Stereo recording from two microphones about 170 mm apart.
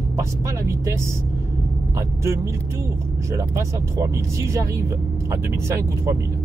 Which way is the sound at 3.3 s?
15° right (ahead or behind).